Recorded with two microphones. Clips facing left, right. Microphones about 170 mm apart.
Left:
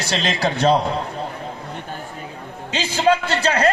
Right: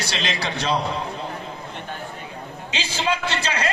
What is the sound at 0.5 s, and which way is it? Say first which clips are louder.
Speech: left 8 dB; 50° left (ahead or behind).